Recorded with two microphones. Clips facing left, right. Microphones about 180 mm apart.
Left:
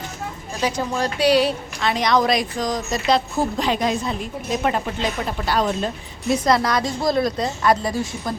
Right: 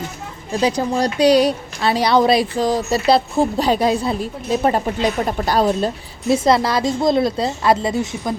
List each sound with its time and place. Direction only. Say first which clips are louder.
0.6 s a woman's voice: right 4 dB; 35° right (ahead or behind); by 8.4 s 20° right (ahead or behind)